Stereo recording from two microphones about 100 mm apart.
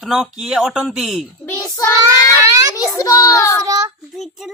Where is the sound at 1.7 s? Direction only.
40° left (ahead or behind).